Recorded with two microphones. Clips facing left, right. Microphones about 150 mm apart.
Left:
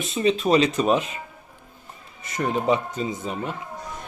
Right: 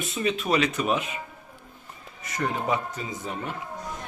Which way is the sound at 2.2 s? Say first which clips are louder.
Left 4 dB; 25° left (ahead or behind).